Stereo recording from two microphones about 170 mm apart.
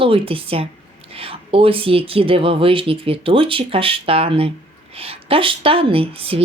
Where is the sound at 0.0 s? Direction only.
30° right (ahead or behind).